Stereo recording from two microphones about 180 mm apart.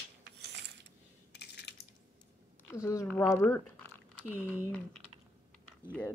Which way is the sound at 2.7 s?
20° left (ahead or behind).